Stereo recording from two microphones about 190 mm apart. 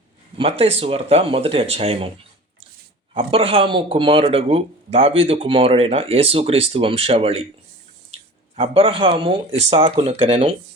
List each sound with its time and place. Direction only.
0.3 s speech: 30° right (ahead or behind)
3.2 s speech: 30° right (ahead or behind)
8.5 s speech: 30° right (ahead or behind)